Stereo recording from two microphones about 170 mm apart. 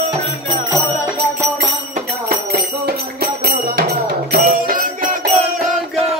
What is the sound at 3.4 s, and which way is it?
Music, 65° right (ahead or behind).